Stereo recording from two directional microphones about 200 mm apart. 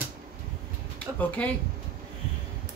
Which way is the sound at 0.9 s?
5° left (ahead or behind).